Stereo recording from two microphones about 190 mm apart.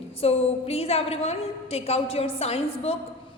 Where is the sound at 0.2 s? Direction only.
30° left (ahead or behind).